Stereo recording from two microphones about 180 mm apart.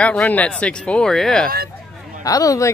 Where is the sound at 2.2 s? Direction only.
20° left (ahead or behind).